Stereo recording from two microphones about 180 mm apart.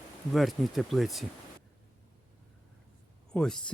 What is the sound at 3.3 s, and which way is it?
Speech, 5° left (ahead or behind).